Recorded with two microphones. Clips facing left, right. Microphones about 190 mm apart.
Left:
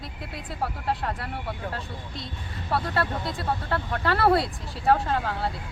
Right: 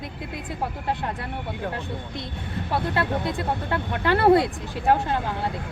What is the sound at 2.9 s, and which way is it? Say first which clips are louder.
Speech: right 3 dB; 20° right (ahead or behind).